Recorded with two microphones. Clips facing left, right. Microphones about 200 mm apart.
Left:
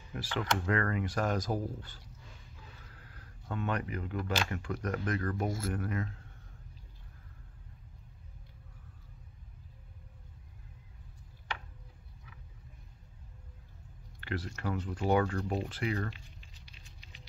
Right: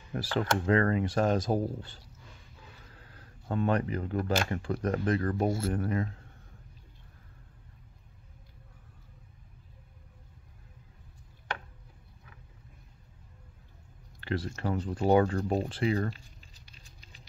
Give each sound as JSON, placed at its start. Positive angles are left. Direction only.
{"t": 0.1, "sound": "speech", "side_deg": -35}
{"t": 3.2, "sound": "speech", "side_deg": -35}
{"t": 4.2, "sound": "speech", "side_deg": -50}
{"t": 4.5, "sound": "speech", "side_deg": -30}
{"t": 14.2, "sound": "speech", "side_deg": -30}
{"t": 16.6, "sound": "patter", "side_deg": -40}